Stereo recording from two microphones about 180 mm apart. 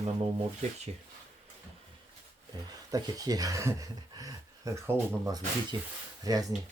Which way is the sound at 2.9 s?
20° right (ahead or behind).